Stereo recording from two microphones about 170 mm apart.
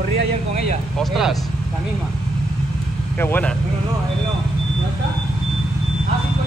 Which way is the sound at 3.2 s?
10° left (ahead or behind).